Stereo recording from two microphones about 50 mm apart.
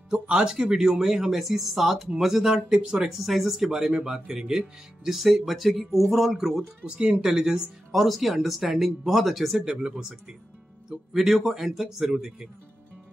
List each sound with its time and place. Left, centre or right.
0.1 s speech: centre
3.3 s speech: centre
7.0 s speech: centre
7.9 s speech: centre
9.7 s speech: centre
10.9 s speech: centre